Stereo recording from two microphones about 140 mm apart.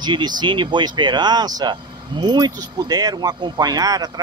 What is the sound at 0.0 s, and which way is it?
Speech, 30° right (ahead or behind).